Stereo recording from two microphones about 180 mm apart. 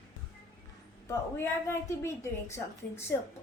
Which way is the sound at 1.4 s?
15° left (ahead or behind).